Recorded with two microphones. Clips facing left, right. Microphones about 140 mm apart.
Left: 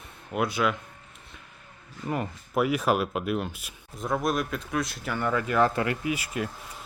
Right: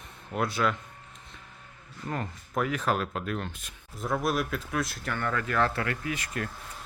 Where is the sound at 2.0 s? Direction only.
10° left (ahead or behind).